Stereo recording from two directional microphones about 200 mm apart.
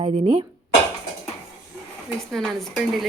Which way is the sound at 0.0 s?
30° right (ahead or behind).